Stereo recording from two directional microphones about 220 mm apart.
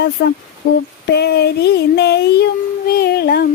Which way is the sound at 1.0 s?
50° left (ahead or behind).